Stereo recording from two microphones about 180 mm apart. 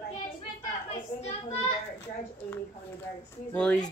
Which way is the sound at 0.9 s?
40° left (ahead or behind).